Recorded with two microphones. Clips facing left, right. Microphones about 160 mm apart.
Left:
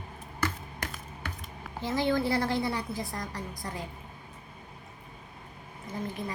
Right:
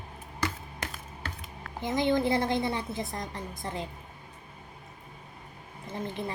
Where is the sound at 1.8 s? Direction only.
20° right (ahead or behind).